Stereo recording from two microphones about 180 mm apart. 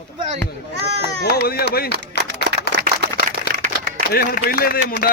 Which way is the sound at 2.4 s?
65° left (ahead or behind).